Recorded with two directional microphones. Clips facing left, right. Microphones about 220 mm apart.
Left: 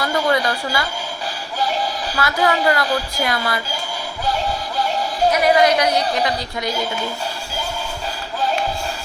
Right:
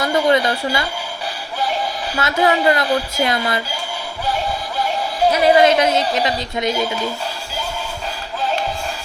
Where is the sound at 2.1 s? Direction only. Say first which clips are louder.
Right 2 dB; 25° right (ahead or behind).